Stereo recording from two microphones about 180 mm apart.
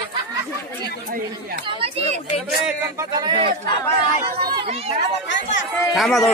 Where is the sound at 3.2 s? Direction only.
25° right (ahead or behind).